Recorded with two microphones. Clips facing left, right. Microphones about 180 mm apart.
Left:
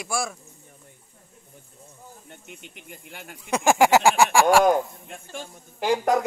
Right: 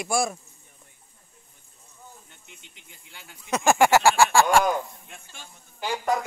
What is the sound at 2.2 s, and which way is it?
Speech, 60° left (ahead or behind).